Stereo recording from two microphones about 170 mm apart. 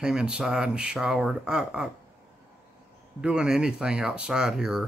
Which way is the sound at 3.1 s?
5° right (ahead or behind).